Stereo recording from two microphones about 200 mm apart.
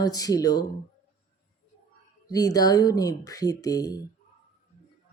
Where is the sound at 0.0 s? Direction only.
20° left (ahead or behind).